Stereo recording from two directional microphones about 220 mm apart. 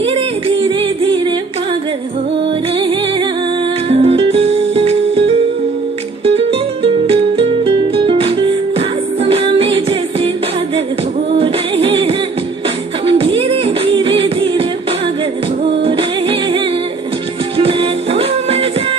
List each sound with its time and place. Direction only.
0.0 s music: 25° right (ahead or behind)
2.8 s music: 20° right (ahead or behind)
11.3 s music: 25° right (ahead or behind)
15.8 s music: 25° right (ahead or behind)